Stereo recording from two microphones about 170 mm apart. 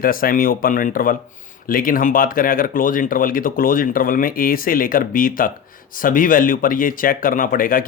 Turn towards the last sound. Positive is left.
turn(degrees=55)  # may be behind; listen again after turning